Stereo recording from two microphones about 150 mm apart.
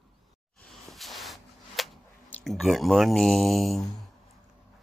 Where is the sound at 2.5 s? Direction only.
Centre (ahead or behind).